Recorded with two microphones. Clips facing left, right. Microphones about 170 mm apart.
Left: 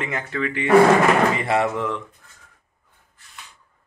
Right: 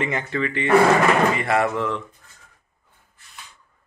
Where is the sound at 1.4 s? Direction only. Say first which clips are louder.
Even; 25° left (ahead or behind).